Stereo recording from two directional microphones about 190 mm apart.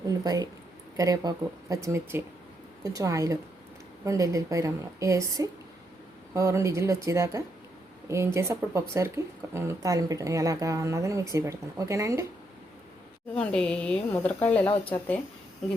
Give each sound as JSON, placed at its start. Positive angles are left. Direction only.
{"t": 0.3, "sound": "speech", "side_deg": -20}
{"t": 13.3, "sound": "speech", "side_deg": 5}